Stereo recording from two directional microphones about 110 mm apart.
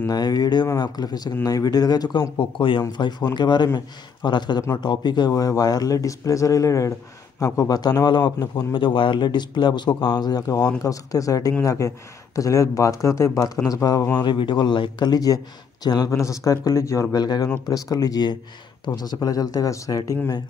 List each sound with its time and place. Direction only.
0.0 s a man's voice: 35° left (ahead or behind)
14.1 s a man's voice: 45° left (ahead or behind); by 17.2 s 30° left (ahead or behind)
17.2 s a man's voice: 40° left (ahead or behind)